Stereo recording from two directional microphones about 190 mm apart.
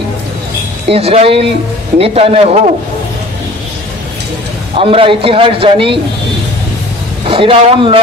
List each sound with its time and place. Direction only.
0.8 s a man's voice: 30° right (ahead or behind)
4.7 s a man's voice: 30° right (ahead or behind)
7.2 s speech: 30° right (ahead or behind)